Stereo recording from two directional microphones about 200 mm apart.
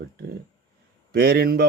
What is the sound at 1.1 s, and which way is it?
Speech, 50° right (ahead or behind).